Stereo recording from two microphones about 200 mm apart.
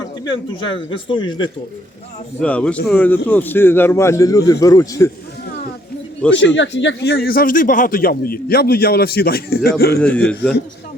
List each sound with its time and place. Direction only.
0.0 s speech: 25° left (ahead or behind)
2.4 s a man's voice: 5° left (ahead or behind)
6.3 s a man's voice: 65° left (ahead or behind)
10.0 s a man's voice: 5° left (ahead or behind)